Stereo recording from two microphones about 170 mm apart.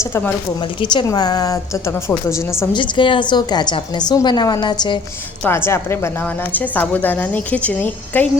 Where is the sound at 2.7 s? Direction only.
30° left (ahead or behind).